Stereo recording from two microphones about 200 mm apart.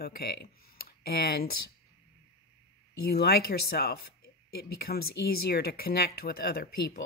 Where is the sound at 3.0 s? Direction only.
50° left (ahead or behind).